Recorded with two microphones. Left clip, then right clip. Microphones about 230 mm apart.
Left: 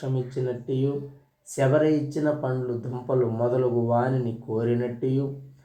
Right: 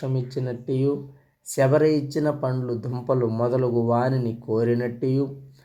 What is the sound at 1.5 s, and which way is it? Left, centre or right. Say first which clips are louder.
Speech: right 2 dB; right.